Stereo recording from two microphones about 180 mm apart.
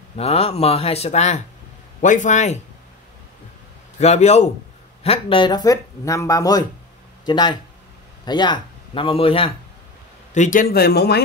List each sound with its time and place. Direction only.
0.2 s a man's voice: 35° left (ahead or behind)
4.0 s speech: 35° left (ahead or behind)
10.3 s speech: 45° left (ahead or behind); by 11.2 s 65° left (ahead or behind)